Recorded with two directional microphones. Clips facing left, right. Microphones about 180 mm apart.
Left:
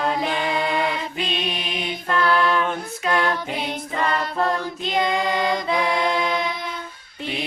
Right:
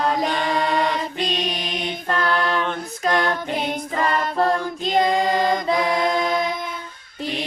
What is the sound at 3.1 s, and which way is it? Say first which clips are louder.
Music: right 2 dB; 40° right (ahead or behind).